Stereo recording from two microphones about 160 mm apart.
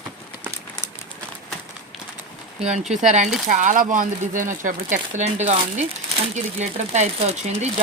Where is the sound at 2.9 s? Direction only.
50° right (ahead or behind).